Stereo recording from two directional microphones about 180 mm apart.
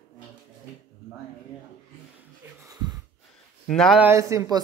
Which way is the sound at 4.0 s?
15° right (ahead or behind).